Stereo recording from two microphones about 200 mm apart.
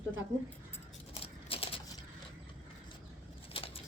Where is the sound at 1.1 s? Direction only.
30° left (ahead or behind).